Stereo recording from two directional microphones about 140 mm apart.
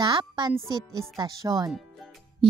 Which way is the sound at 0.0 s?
30° right (ahead or behind).